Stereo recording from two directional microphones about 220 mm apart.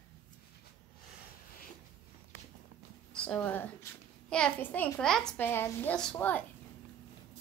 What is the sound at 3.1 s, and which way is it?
A child's voice, 5° left (ahead or behind).